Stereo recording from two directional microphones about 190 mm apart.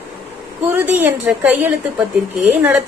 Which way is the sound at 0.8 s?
10° right (ahead or behind).